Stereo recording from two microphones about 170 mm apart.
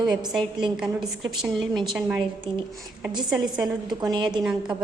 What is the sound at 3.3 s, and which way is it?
A woman's voice, 25° right (ahead or behind).